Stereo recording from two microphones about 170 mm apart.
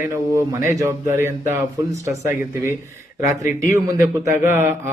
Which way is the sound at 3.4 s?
55° left (ahead or behind).